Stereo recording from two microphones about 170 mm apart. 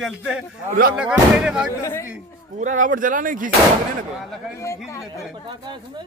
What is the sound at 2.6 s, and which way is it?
Speech, 50° right (ahead or behind).